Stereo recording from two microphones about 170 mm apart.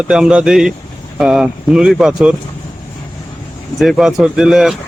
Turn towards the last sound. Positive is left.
turn(degrees=-5)  # may be behind; listen again after turning